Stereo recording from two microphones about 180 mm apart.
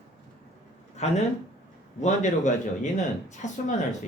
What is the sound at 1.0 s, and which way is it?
Speech, 40° left (ahead or behind).